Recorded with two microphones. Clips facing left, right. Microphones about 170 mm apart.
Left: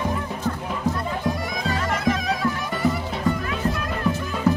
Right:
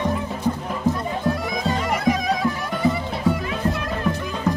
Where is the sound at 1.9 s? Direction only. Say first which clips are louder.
Right 2 dB; centre (ahead or behind).